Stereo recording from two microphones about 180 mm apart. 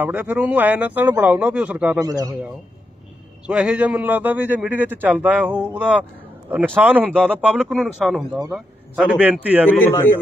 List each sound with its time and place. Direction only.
0.0 s a man's voice: 10° right (ahead or behind)
2.0 s a man's voice: 20° right (ahead or behind)
3.4 s a man's voice: 5° right (ahead or behind)
9.7 s a man's voice: 10° left (ahead or behind)